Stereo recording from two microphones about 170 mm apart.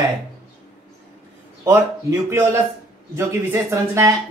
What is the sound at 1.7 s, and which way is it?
Speech, 15° right (ahead or behind).